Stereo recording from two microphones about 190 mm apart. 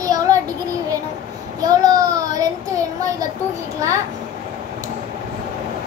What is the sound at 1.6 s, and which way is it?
A child's voice, 20° right (ahead or behind).